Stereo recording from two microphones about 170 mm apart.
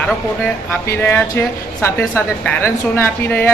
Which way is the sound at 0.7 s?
15° left (ahead or behind).